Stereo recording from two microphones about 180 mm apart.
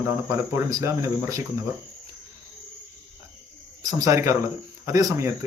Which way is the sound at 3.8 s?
20° right (ahead or behind).